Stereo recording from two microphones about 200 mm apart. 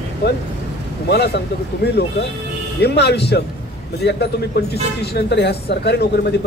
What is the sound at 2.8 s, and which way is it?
Speech, 55° left (ahead or behind).